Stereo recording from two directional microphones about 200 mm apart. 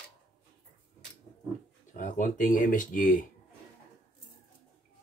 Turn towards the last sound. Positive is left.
turn(degrees=40)  # may be behind; listen again after turning